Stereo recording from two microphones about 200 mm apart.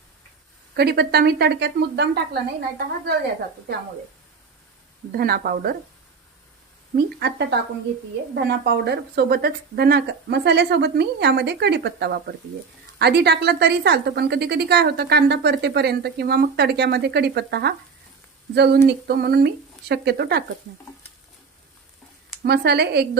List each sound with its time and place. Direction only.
0.7 s a woman's voice: 55° right (ahead or behind)
5.1 s speech: 50° right (ahead or behind)
7.2 s a woman's voice: 55° right (ahead or behind)
8.4 s a woman's voice: 55° right (ahead or behind)
22.4 s a woman's voice: 55° right (ahead or behind)